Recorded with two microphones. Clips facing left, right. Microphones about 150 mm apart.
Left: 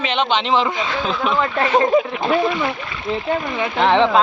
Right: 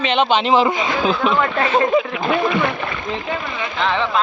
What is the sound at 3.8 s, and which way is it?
Speech, 25° left (ahead or behind).